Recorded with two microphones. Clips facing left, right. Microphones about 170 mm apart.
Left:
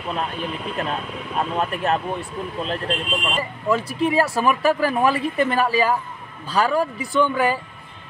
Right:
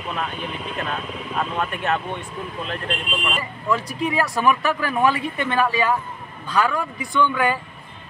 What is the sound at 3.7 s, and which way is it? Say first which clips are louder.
Speech: left 3 dB; 30° left (ahead or behind).